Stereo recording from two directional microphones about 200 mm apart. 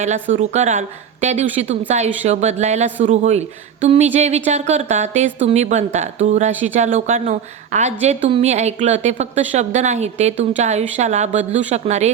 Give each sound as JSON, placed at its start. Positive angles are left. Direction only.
{"t": 0.3, "sound": "speech", "side_deg": -35}